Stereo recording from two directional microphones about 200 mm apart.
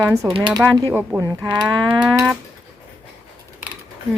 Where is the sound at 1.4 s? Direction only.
20° right (ahead or behind).